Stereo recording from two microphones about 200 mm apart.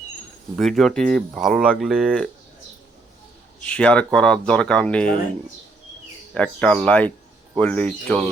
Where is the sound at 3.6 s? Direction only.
5° left (ahead or behind).